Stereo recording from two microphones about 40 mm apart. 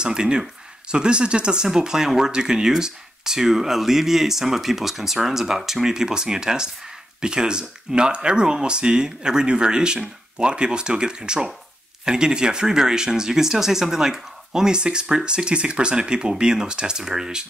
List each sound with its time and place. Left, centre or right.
0.0 s speech: right